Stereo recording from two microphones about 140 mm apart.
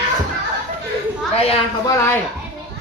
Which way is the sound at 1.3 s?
45° left (ahead or behind).